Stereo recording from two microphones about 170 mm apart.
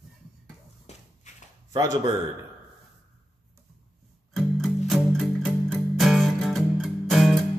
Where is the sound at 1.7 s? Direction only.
20° right (ahead or behind).